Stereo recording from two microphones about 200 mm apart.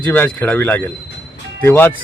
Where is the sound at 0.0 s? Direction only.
10° left (ahead or behind).